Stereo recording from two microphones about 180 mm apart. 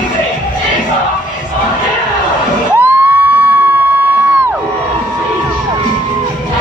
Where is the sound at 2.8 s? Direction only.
10° right (ahead or behind).